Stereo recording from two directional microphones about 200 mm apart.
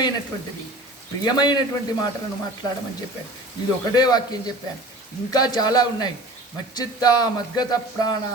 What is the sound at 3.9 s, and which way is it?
A man's voice, 20° left (ahead or behind).